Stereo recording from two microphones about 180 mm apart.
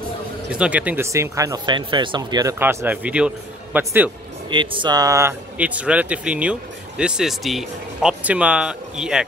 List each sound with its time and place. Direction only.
0.5 s speech: 5° right (ahead or behind); by 2.5 s 25° right (ahead or behind)
2.6 s speech: 10° right (ahead or behind)
4.5 s speech: 25° right (ahead or behind); by 9.2 s 5° right (ahead or behind)